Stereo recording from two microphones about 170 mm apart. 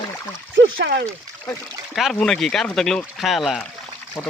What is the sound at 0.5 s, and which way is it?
Speech, 90° right.